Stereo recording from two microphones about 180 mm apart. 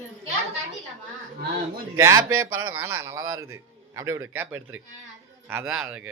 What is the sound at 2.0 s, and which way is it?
A man's voice, 15° right (ahead or behind).